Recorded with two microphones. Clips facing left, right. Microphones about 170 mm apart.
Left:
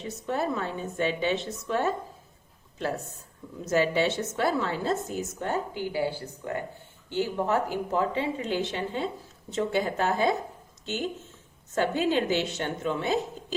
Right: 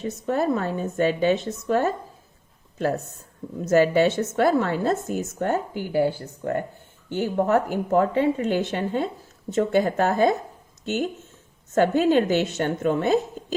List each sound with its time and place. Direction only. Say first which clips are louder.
0.0 s a woman's voice: right 6 dB; 45° right (ahead or behind)
3.7 s a woman's voice: right 6 dB; 50° right (ahead or behind)
11.7 s a woman's voice: right 7 dB; 50° right (ahead or behind)